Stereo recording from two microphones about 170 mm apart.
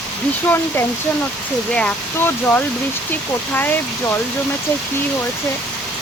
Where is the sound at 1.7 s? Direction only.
5° left (ahead or behind).